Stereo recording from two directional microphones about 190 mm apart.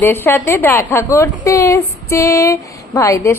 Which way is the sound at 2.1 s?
15° left (ahead or behind).